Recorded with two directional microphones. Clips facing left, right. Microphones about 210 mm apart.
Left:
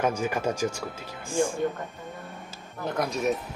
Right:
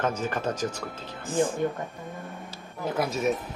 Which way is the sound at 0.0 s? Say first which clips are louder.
Left 2 dB; 10° left (ahead or behind).